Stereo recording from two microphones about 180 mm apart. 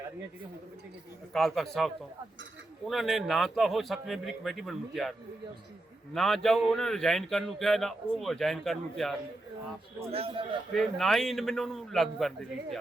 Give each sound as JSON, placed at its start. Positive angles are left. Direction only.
{"t": 1.3, "sound": "speech", "side_deg": 0}
{"t": 6.1, "sound": "speech", "side_deg": 0}
{"t": 10.1, "sound": "a man's voice", "side_deg": -30}
{"t": 10.8, "sound": "speech", "side_deg": 0}